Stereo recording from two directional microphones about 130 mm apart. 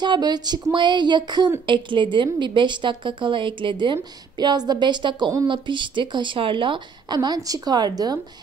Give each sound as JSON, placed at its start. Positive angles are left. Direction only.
{"t": 0.0, "sound": "a woman's voice", "side_deg": -35}